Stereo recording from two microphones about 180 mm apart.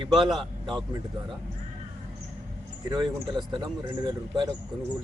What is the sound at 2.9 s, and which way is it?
Speech, 25° right (ahead or behind).